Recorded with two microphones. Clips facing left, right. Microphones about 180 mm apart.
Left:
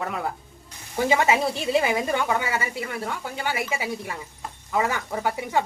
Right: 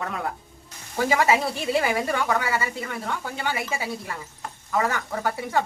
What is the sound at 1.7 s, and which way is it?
Speech, 20° left (ahead or behind).